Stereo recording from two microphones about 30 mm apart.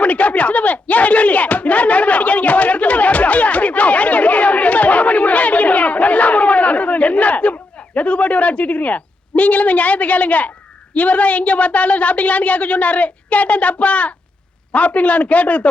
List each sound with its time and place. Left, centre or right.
0.0 s a woman's voice: left